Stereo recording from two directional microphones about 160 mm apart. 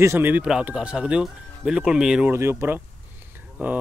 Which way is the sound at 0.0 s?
15° right (ahead or behind).